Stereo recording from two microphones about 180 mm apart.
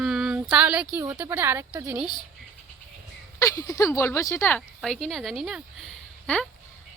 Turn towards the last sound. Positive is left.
turn(degrees=5)  # may be behind; listen again after turning